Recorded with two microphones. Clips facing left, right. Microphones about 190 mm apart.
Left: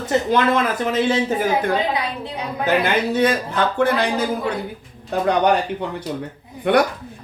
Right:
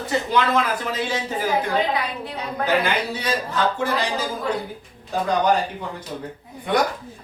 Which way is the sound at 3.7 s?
60° left (ahead or behind).